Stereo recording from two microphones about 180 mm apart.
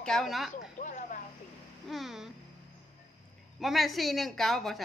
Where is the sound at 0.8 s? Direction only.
45° left (ahead or behind).